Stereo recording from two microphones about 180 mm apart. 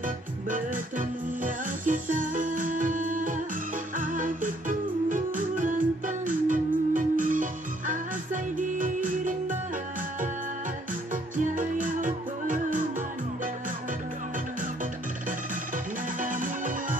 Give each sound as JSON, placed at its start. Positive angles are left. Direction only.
{"t": 0.0, "sound": "music", "side_deg": -45}
{"t": 11.3, "sound": "music", "side_deg": -45}
{"t": 15.2, "sound": "music", "side_deg": -45}